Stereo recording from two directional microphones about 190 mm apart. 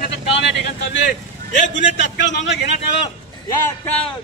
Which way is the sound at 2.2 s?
70° left (ahead or behind).